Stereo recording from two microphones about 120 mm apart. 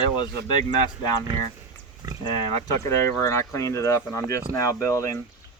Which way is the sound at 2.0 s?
30° right (ahead or behind).